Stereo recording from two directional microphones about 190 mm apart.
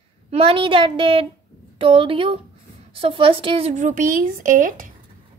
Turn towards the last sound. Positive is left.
turn(degrees=-45)  # may be behind; listen again after turning